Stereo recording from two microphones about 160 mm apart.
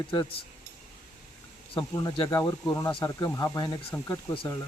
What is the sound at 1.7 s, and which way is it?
Speech, 30° left (ahead or behind).